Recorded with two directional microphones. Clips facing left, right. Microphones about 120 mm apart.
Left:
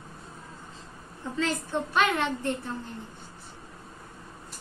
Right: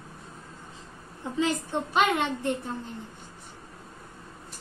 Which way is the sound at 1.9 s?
15° right (ahead or behind).